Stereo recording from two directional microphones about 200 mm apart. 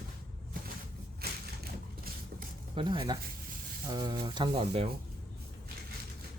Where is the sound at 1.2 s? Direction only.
50° right (ahead or behind).